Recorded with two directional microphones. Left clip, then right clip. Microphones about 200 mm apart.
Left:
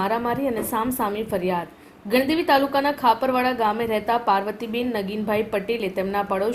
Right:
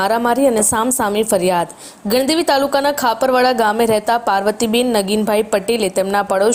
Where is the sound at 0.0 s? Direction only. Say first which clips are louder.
Right 9 dB; 40° right (ahead or behind).